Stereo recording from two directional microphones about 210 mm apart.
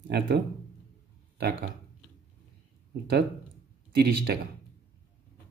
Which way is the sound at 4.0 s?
50° right (ahead or behind).